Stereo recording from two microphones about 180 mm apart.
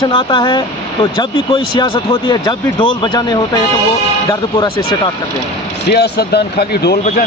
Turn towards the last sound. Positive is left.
turn(degrees=60)  # may be behind; listen again after turning